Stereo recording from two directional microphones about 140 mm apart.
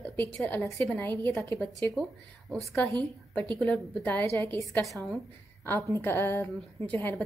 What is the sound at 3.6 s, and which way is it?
A woman's voice, 10° left (ahead or behind).